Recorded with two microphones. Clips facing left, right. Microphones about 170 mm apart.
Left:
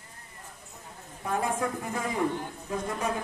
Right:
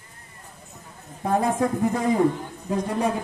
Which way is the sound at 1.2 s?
35° right (ahead or behind).